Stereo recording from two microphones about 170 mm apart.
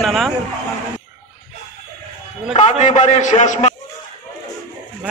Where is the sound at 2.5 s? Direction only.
40° left (ahead or behind).